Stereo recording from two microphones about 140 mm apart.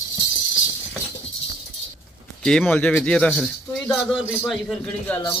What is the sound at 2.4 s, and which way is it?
A man's voice, 5° left (ahead or behind).